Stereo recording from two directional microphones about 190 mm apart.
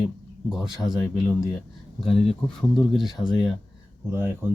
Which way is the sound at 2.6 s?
Centre (ahead or behind).